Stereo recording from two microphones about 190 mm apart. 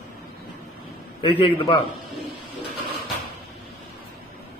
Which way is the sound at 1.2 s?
25° left (ahead or behind).